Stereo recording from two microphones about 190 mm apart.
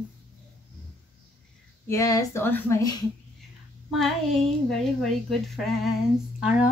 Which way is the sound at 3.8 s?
Centre (ahead or behind).